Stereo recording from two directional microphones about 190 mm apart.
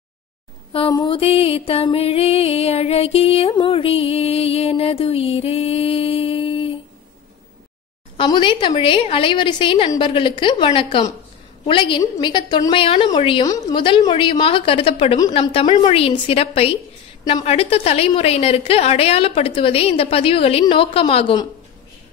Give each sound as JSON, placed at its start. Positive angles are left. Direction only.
{"t": 0.7, "sound": "music", "side_deg": 25}
{"t": 8.2, "sound": "a woman's voice", "side_deg": 25}
{"t": 15.1, "sound": "music", "side_deg": 20}